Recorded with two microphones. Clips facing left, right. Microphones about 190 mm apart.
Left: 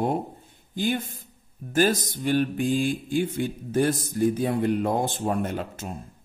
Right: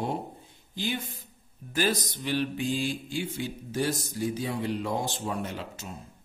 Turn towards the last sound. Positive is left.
turn(degrees=50)  # may be behind; listen again after turning